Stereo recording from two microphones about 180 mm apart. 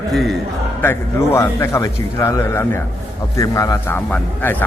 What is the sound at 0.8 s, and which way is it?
A man's voice, 15° left (ahead or behind).